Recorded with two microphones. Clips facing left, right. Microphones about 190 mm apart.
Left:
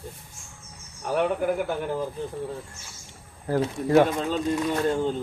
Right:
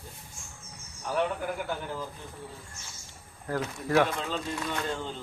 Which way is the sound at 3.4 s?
30° left (ahead or behind).